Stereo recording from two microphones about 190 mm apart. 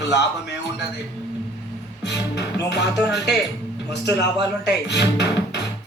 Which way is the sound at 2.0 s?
65° left (ahead or behind).